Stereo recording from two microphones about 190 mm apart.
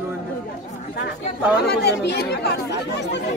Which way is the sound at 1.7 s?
60° left (ahead or behind).